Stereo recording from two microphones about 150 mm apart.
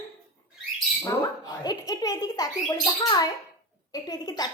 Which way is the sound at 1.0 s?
25° left (ahead or behind).